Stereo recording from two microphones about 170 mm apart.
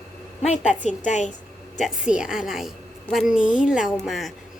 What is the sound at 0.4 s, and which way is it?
Speech, 45° left (ahead or behind).